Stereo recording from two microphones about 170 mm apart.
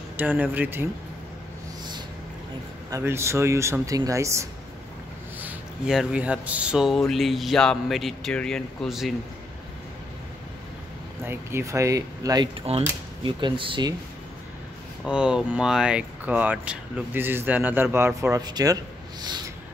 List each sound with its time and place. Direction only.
0.2 s speech: 10° right (ahead or behind)
2.9 s speech: 15° right (ahead or behind)
5.4 s speech: 5° right (ahead or behind)
11.2 s speech: 15° right (ahead or behind)
12.7 s speech: 40° right (ahead or behind)
15.0 s speech: 5° right (ahead or behind); by 18.8 s 25° right (ahead or behind)